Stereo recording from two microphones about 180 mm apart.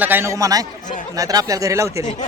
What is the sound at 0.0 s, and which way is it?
Speech, 10° right (ahead or behind).